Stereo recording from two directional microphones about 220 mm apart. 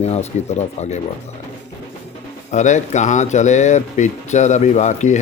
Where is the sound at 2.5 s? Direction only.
35° left (ahead or behind).